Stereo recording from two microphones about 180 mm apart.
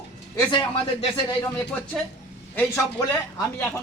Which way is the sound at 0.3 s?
25° left (ahead or behind).